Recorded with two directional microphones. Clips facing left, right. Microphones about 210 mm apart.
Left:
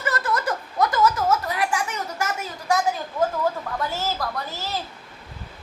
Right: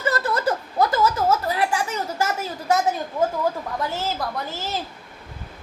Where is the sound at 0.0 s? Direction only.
30° right (ahead or behind).